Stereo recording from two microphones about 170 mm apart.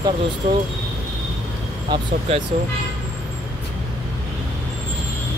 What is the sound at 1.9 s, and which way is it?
Speech, 35° right (ahead or behind).